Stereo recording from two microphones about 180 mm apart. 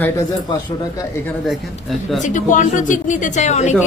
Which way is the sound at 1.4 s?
Centre (ahead or behind).